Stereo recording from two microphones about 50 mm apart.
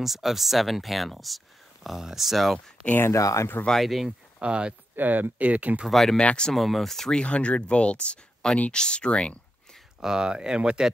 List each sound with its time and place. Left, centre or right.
0.0 s speech: centre
3.1 s speech: left
3.8 s speech: centre
4.4 s speech: right
4.9 s speech: right
5.9 s speech: centre
6.1 s speech: centre
6.5 s speech: centre
7.2 s speech: left
9.9 s speech: centre